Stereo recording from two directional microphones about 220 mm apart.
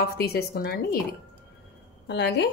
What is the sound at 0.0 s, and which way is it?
Speech, 45° left (ahead or behind).